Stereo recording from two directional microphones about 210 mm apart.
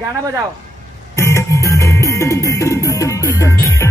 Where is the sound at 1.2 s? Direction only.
15° left (ahead or behind).